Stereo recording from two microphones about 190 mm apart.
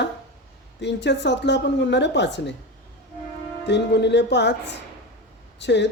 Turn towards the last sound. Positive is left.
turn(degrees=65)  # may be behind; listen again after turning